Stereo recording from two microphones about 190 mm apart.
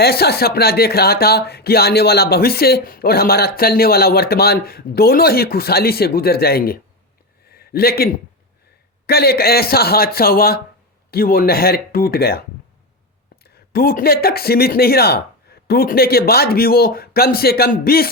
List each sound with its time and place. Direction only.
0.0 s speech: 55° left (ahead or behind)
7.4 s a sound: 55° left (ahead or behind)
9.0 s speech: 55° left (ahead or behind)